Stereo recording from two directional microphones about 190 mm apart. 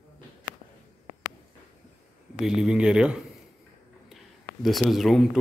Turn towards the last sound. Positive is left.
turn(degrees=0)  # may be behind; listen again after turning